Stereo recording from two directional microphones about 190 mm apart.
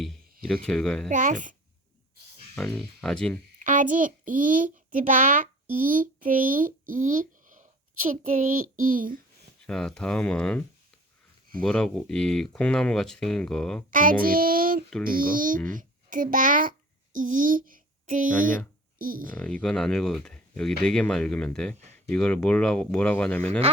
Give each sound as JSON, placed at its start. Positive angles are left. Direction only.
{"t": 0.4, "sound": "speech", "side_deg": 5}
{"t": 1.1, "sound": "child singing", "side_deg": -40}
{"t": 2.6, "sound": "speech", "side_deg": 5}
{"t": 3.6, "sound": "a child's voice", "side_deg": -45}
{"t": 9.6, "sound": "speech", "side_deg": 5}
{"t": 11.6, "sound": "speech", "side_deg": 5}
{"t": 13.9, "sound": "child singing", "side_deg": -45}
{"t": 15.7, "sound": "a child's voice", "side_deg": -45}
{"t": 18.9, "sound": "child singing", "side_deg": -50}
{"t": 19.3, "sound": "speech", "side_deg": 10}
{"t": 23.4, "sound": "speech", "side_deg": -35}